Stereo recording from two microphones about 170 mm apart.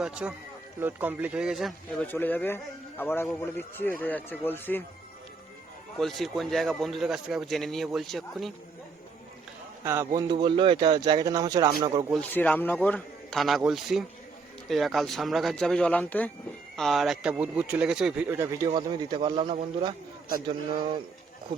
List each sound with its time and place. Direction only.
0.0 s a man's voice: 5° right (ahead or behind)
2.0 s a man's voice: 10° left (ahead or behind)
6.0 s a man's voice: centre (ahead or behind)
9.8 s a man's voice: 15° right (ahead or behind)
10.2 s a man's voice: 25° right (ahead or behind)
12.3 s a man's voice: 10° left (ahead or behind); by 18.7 s 15° right (ahead or behind)
18.7 s a man's voice: 25° right (ahead or behind)